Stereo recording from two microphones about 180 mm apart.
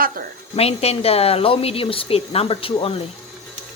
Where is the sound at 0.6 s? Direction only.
35° left (ahead or behind).